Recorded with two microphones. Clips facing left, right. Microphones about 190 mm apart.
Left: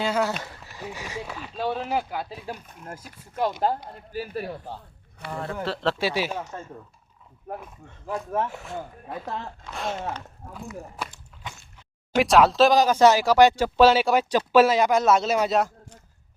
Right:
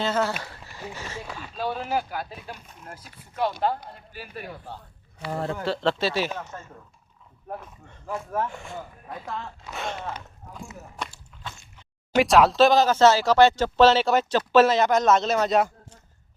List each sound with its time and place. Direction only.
0.0 s speech: 15° left (ahead or behind)
2.5 s speech: 45° left (ahead or behind)
5.3 s speech: 35° right (ahead or behind)
5.6 s speech: centre (ahead or behind)
9.0 s speech: 25° left (ahead or behind)
9.6 s speech: centre (ahead or behind)
10.4 s speech: 50° left (ahead or behind)
12.2 s speech: centre (ahead or behind)
12.7 s speech: 15° left (ahead or behind)